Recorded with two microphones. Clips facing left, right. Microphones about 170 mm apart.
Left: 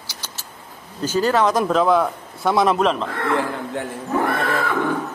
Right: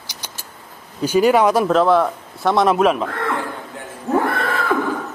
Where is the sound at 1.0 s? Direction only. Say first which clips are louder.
Right 4 dB; 15° right (ahead or behind).